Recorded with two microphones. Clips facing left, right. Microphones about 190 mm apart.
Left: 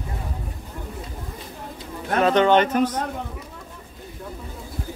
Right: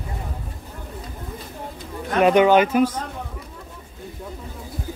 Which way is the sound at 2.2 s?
15° right (ahead or behind).